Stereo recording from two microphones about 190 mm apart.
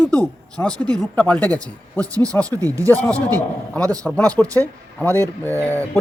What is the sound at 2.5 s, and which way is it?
Speech, 15° right (ahead or behind).